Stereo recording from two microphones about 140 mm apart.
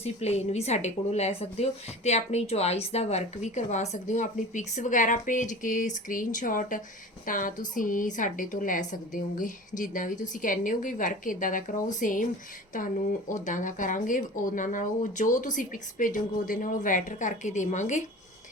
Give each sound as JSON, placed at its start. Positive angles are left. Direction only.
{"t": 0.0, "sound": "a woman's voice", "side_deg": 50}